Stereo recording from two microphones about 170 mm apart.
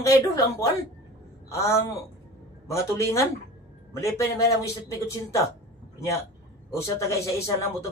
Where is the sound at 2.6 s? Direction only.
15° left (ahead or behind).